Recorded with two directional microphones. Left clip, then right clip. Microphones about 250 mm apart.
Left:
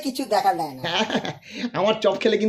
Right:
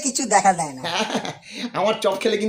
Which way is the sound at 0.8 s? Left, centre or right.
Centre.